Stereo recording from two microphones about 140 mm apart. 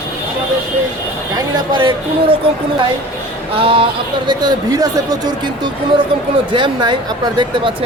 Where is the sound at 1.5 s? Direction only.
35° right (ahead or behind).